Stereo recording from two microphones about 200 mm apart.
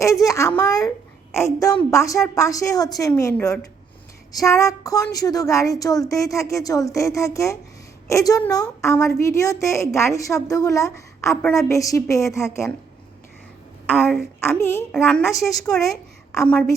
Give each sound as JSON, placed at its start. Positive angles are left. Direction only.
{"t": 0.0, "sound": "a sound", "side_deg": 15}
{"t": 0.6, "sound": "a child's voice", "side_deg": 20}
{"t": 13.8, "sound": "speech", "side_deg": 10}
{"t": 14.9, "sound": "speech", "side_deg": 0}